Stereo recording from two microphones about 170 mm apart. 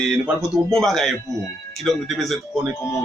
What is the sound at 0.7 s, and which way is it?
Speech, centre (ahead or behind).